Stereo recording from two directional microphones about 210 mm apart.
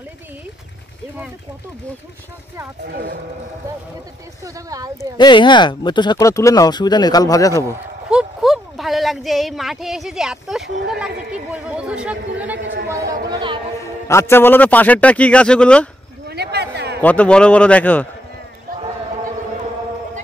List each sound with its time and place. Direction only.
2.9 s speech: 45° right (ahead or behind)
4.6 s a woman's voice: 15° right (ahead or behind)
5.1 s speech: 20° left (ahead or behind)
7.6 s speech: 5° right (ahead or behind)
13.3 s speech: 20° right (ahead or behind)
14.0 s a man's voice: 10° left (ahead or behind)
16.3 s a sound: 50° right (ahead or behind)
17.0 s a man's voice: 5° left (ahead or behind)